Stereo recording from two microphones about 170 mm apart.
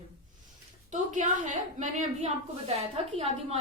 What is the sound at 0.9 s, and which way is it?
A woman's voice, 45° right (ahead or behind).